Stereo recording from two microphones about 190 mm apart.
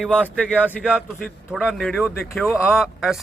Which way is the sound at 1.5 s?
5° left (ahead or behind).